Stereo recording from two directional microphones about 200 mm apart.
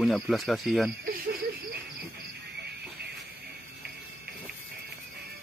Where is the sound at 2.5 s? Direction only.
55° right (ahead or behind).